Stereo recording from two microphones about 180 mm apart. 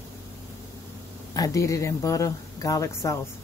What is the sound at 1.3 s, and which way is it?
Speech, 20° left (ahead or behind).